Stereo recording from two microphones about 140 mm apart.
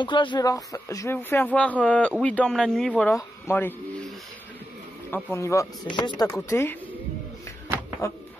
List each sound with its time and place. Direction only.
0.0 s speech: 35° left (ahead or behind); by 3.7 s 15° left (ahead or behind)
5.1 s speech: 20° left (ahead or behind)
5.9 s speech: 30° left (ahead or behind)
6.5 s speech: 15° left (ahead or behind)